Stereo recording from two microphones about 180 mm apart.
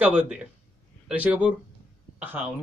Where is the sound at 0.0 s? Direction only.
5° right (ahead or behind).